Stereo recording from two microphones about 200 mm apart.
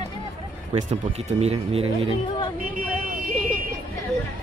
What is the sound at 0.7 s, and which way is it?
Speech, 30° right (ahead or behind).